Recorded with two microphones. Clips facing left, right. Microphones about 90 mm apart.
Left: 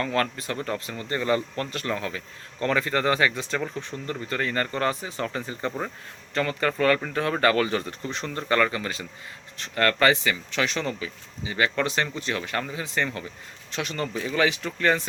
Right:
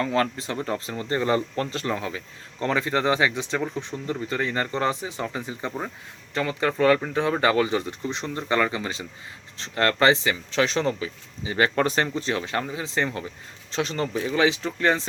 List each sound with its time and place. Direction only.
0.0 s speech: 20° right (ahead or behind)